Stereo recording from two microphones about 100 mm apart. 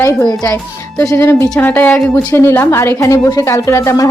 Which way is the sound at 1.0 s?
25° left (ahead or behind).